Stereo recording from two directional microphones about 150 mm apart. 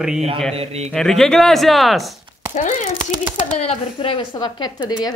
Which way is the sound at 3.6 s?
40° left (ahead or behind).